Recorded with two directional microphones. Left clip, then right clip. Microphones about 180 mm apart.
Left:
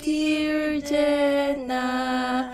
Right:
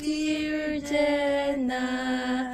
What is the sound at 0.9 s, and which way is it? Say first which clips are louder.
Mantra: left 3 dB; 45° left (ahead or behind).